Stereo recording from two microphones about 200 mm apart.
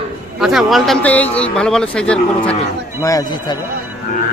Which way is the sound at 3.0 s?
20° left (ahead or behind).